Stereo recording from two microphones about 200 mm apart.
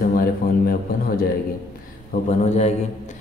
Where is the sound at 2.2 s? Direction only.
35° left (ahead or behind).